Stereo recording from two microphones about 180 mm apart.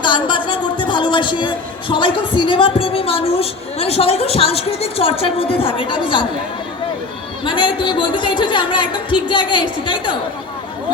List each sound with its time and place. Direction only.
0.0 s a man's voice: 25° left (ahead or behind)
7.4 s a woman's voice: 25° left (ahead or behind)